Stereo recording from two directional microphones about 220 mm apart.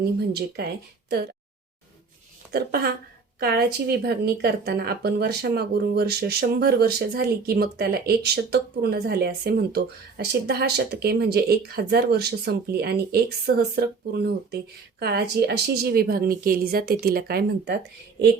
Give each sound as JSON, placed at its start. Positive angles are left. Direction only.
{"t": 0.2, "sound": "speech", "side_deg": -45}
{"t": 2.5, "sound": "speech", "side_deg": -45}